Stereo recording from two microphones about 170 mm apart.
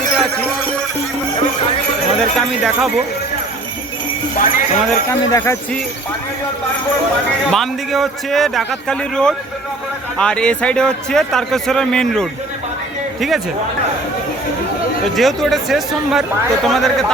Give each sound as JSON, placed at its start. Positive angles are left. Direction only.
{"t": 4.4, "sound": "speech", "side_deg": 50}
{"t": 5.3, "sound": "speech", "side_deg": 15}
{"t": 7.5, "sound": "a man's voice", "side_deg": 0}
{"t": 15.1, "sound": "a man's voice", "side_deg": 0}